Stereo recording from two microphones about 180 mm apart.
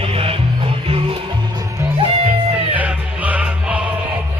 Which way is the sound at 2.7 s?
10° right (ahead or behind).